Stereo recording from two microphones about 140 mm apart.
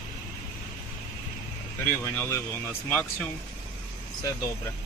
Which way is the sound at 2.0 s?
15° left (ahead or behind).